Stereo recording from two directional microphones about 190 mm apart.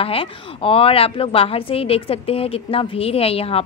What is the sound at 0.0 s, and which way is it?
A woman's voice, 30° left (ahead or behind).